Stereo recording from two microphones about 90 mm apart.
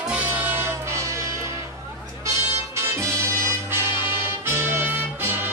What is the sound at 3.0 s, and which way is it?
Music, 30° right (ahead or behind).